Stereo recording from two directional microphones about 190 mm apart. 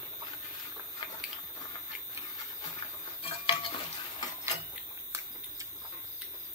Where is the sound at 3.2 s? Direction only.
30° left (ahead or behind).